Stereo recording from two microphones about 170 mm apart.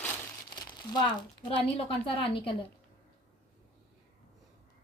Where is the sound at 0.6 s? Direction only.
25° left (ahead or behind).